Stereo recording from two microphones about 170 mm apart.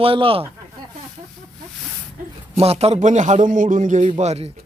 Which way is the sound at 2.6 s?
35° right (ahead or behind).